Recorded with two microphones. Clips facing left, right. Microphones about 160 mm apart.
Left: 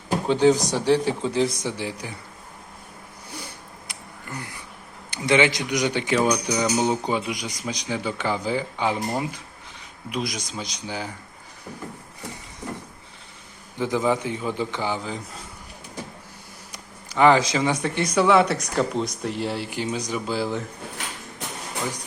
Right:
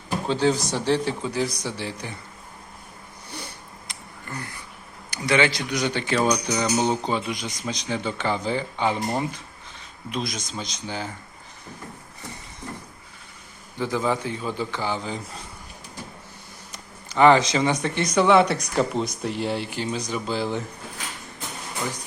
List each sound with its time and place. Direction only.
0.3 s a man's voice: 15° left (ahead or behind)
1.3 s a man's voice: 25° left (ahead or behind)
3.8 s a sound: 15° left (ahead or behind)
5.1 s a man's voice: 20° left (ahead or behind)
13.7 s a man's voice: 15° left (ahead or behind)
16.7 s speech: 10° left (ahead or behind)
19.7 s a man's voice: 15° left (ahead or behind)